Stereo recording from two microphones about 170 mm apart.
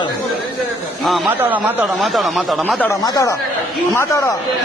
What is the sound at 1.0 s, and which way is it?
Speech, centre (ahead or behind).